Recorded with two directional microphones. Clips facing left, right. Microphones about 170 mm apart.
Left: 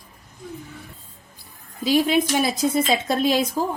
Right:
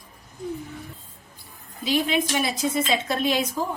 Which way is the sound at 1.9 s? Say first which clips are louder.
Left 4 dB; 40° left (ahead or behind).